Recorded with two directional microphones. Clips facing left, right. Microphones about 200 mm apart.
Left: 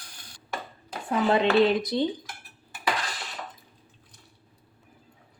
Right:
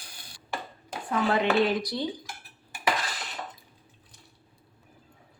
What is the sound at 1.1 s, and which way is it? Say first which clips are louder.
Speech: left 3 dB; 20° left (ahead or behind).